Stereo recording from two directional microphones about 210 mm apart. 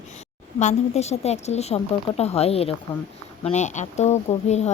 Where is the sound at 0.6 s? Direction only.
30° left (ahead or behind).